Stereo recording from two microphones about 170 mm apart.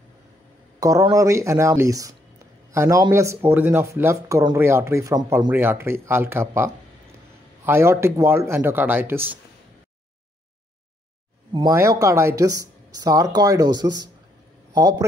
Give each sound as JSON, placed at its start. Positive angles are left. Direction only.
{"t": 0.7, "sound": "speech", "side_deg": -20}
{"t": 11.7, "sound": "a man's voice", "side_deg": -20}